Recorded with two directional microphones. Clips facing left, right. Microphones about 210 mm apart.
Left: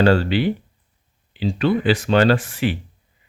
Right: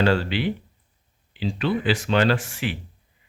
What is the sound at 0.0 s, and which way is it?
A man's voice, 40° left (ahead or behind).